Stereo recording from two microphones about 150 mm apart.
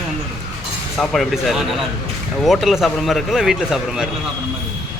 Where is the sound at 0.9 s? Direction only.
Centre (ahead or behind).